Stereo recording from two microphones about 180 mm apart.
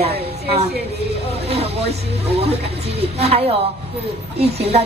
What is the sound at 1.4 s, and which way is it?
A woman's voice, 35° right (ahead or behind).